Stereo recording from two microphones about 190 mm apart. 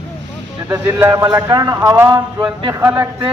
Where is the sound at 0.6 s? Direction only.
15° right (ahead or behind).